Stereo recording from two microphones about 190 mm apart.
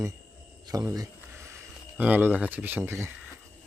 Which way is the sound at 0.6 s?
20° right (ahead or behind).